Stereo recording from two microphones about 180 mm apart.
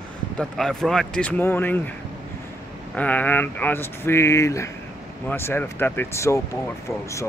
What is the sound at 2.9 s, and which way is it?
Speech, 10° left (ahead or behind).